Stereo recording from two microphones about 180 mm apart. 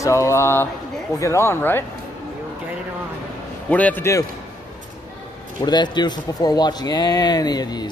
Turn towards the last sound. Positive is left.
turn(degrees=25)  # may be behind; listen again after turning